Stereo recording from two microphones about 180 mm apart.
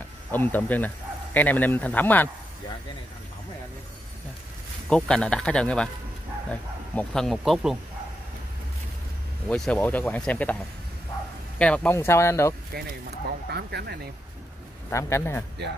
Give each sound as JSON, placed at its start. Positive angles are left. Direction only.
{"t": 0.3, "sound": "speech", "side_deg": 10}
{"t": 4.8, "sound": "speech", "side_deg": 5}
{"t": 9.5, "sound": "speech", "side_deg": 5}
{"t": 13.5, "sound": "speech", "side_deg": -65}
{"t": 14.9, "sound": "speech", "side_deg": 15}